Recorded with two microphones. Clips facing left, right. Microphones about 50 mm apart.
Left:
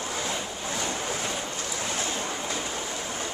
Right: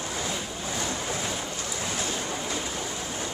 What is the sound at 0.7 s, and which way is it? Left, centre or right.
Waves, centre.